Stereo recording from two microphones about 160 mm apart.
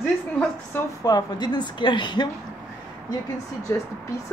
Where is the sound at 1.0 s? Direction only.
25° left (ahead or behind).